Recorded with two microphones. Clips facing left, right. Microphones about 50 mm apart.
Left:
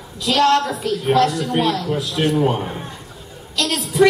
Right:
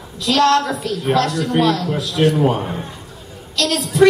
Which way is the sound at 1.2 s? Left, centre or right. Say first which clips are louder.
Right 1 dB; centre.